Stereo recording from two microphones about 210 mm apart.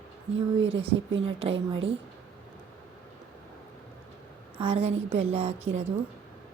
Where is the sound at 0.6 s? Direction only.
25° right (ahead or behind).